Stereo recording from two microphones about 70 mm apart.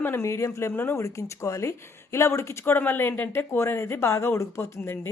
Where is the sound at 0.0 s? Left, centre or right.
Left.